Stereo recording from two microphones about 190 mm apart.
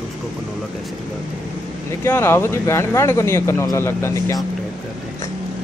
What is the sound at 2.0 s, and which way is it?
Speech, 15° left (ahead or behind).